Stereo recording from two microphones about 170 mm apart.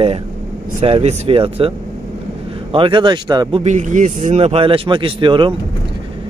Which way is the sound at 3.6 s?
45° right (ahead or behind).